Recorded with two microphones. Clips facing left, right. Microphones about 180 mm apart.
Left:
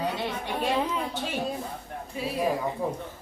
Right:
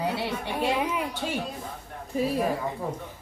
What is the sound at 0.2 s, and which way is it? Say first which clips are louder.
Speech: right 1 dB; 15° right (ahead or behind).